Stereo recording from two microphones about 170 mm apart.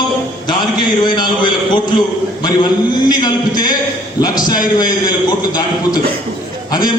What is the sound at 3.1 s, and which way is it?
A man's voice, 25° left (ahead or behind).